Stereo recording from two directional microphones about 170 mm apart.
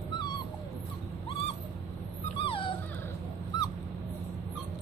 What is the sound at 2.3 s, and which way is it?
Dog, 30° left (ahead or behind).